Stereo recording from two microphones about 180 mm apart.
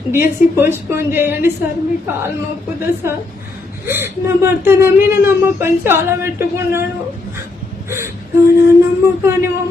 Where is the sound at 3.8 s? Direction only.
15° right (ahead or behind).